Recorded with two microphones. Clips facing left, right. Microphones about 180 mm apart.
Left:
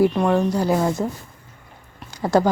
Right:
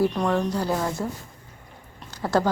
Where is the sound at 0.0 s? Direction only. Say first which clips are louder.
Left 5 dB; 5° left (ahead or behind).